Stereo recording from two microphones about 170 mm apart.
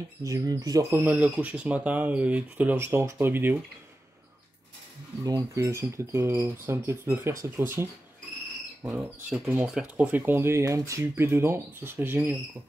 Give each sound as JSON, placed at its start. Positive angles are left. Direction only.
{"t": 0.2, "sound": "speech", "side_deg": -20}
{"t": 5.2, "sound": "speech", "side_deg": -20}